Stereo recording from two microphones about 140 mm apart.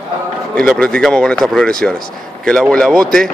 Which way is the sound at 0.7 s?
5° left (ahead or behind).